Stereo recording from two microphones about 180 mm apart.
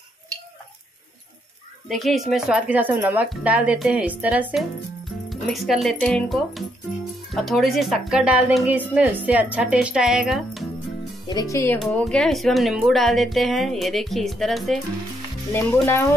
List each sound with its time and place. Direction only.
1.9 s speech: centre (ahead or behind)
11.2 s speech: 20° left (ahead or behind)
11.8 s speech: 5° left (ahead or behind)
15.5 s speech: 15° left (ahead or behind)